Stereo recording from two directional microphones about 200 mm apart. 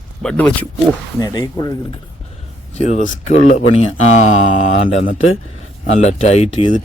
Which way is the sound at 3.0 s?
35° left (ahead or behind).